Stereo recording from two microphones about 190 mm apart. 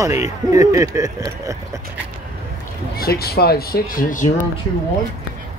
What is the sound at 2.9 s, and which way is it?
Speech, 55° left (ahead or behind).